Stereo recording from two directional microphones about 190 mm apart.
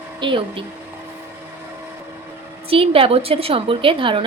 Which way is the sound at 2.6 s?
30° right (ahead or behind).